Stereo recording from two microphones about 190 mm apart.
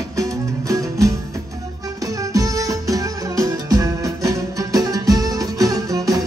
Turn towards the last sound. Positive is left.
turn(degrees=-20)  # may be behind; listen again after turning